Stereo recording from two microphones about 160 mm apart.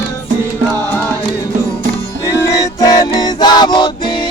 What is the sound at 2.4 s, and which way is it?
Music, 20° left (ahead or behind).